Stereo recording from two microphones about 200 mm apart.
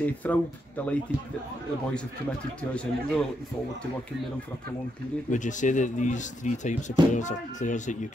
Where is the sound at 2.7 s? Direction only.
5° left (ahead or behind).